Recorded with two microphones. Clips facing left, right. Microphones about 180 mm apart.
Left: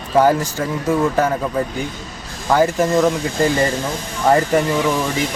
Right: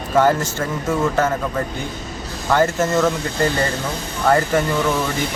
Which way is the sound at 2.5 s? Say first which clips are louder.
Left 2 dB; 15° left (ahead or behind).